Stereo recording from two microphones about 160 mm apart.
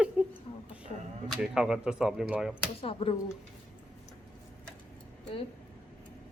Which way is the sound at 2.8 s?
35° left (ahead or behind).